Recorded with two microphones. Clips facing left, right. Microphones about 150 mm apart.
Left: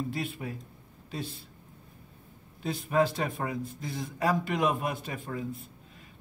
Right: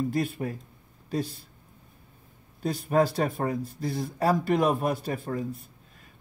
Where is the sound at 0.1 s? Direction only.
40° right (ahead or behind).